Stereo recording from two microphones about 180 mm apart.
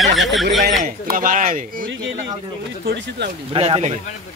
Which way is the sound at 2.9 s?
65° right (ahead or behind).